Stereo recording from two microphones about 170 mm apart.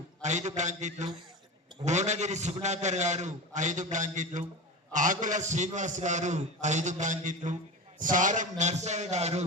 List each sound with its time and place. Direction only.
0.2 s a man's voice: 45° right (ahead or behind)